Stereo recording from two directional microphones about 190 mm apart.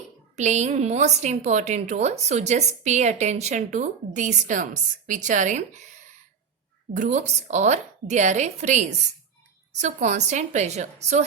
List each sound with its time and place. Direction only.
0.3 s a woman's voice: 35° right (ahead or behind)
6.9 s a woman's voice: 40° right (ahead or behind)